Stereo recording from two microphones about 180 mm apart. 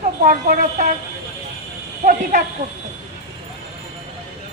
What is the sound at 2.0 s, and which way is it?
Speech, 45° right (ahead or behind).